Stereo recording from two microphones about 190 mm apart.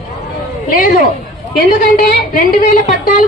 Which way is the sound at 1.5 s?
45° left (ahead or behind).